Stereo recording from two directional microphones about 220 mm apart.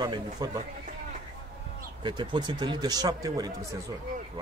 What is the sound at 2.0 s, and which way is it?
Speech, 20° right (ahead or behind).